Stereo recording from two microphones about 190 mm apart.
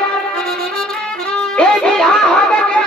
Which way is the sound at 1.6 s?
Centre (ahead or behind).